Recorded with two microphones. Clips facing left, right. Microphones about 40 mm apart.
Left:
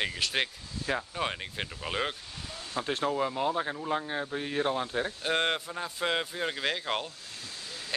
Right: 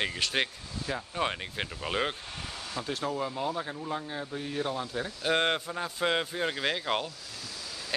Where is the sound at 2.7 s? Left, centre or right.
Left.